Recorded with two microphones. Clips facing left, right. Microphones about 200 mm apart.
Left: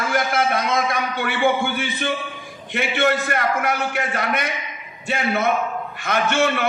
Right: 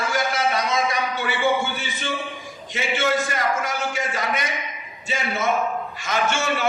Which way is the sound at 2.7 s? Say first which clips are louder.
Left 2 dB; 60° left (ahead or behind).